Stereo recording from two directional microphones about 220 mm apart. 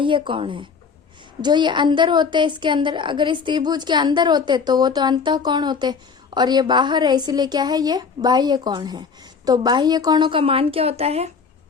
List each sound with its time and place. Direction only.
0.0 s a woman's voice: 20° right (ahead or behind)